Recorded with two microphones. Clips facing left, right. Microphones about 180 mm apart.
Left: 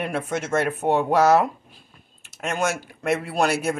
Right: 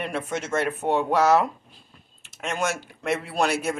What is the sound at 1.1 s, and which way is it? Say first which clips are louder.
Speech: left 2 dB; 45° left (ahead or behind).